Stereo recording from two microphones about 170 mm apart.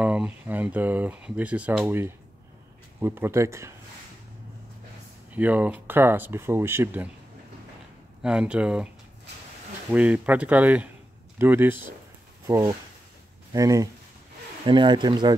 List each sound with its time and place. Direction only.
0.0 s speech: 10° right (ahead or behind)
5.3 s speech: 10° right (ahead or behind)
8.2 s speech: 5° right (ahead or behind); by 15.3 s 25° right (ahead or behind)